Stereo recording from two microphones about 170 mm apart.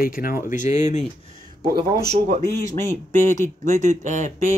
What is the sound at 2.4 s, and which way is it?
Speech, 15° left (ahead or behind).